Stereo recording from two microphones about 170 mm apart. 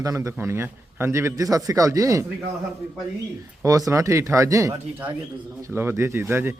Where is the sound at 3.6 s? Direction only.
20° right (ahead or behind).